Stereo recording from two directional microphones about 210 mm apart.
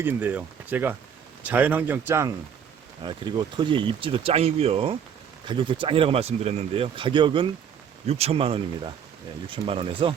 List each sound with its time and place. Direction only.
0.0 s speech: 10° right (ahead or behind)
3.1 s speech: 20° right (ahead or behind)